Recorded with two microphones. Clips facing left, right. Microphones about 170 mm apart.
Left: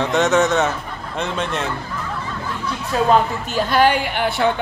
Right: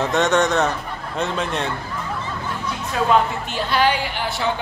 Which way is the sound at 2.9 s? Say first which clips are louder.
Left 3 dB; 35° left (ahead or behind).